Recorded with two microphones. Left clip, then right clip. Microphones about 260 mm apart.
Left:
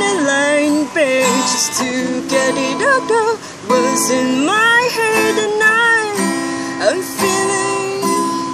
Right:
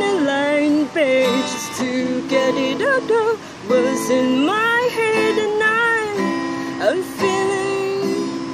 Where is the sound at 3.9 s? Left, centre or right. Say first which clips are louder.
Left 3 dB; left.